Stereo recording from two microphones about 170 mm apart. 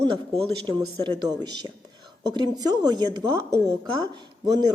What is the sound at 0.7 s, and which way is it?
Speech, 25° right (ahead or behind).